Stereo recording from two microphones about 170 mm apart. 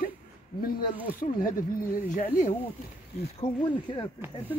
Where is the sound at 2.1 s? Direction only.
45° left (ahead or behind).